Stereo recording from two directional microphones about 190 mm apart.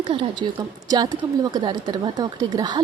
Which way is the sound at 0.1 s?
25° right (ahead or behind).